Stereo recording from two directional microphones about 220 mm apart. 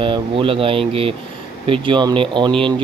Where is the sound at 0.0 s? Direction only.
25° right (ahead or behind).